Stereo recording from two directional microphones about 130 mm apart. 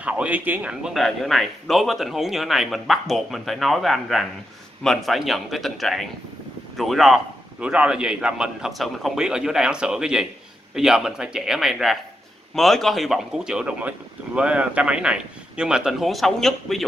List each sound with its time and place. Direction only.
0.0 s speech: 10° right (ahead or behind)